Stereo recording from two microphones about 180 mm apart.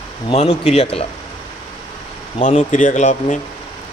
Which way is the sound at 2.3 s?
45° left (ahead or behind).